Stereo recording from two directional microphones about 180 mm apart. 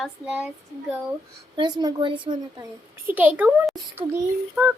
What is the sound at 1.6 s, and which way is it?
Speech, 25° right (ahead or behind).